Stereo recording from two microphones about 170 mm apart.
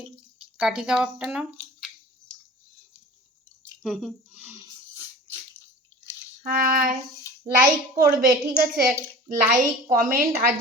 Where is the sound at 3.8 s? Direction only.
Centre (ahead or behind).